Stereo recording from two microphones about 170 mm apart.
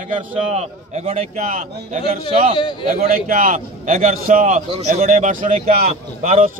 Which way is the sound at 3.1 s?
50° right (ahead or behind).